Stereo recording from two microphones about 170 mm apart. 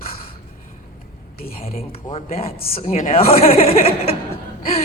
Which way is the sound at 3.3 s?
35° left (ahead or behind).